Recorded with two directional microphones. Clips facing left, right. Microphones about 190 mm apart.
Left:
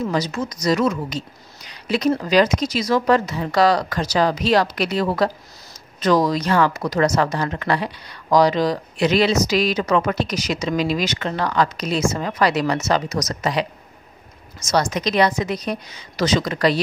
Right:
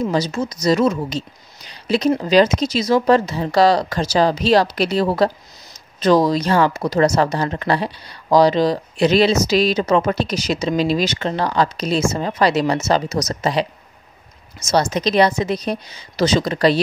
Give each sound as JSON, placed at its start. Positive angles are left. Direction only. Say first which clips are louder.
{"t": 0.1, "sound": "speech", "louder": "right 3 dB", "side_deg": -30}
{"t": 14.7, "sound": "speech", "louder": "right 3 dB", "side_deg": -25}